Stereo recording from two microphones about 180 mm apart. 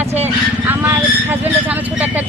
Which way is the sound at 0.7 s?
10° right (ahead or behind).